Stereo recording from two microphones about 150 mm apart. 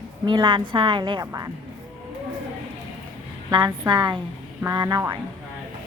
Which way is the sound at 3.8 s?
30° right (ahead or behind).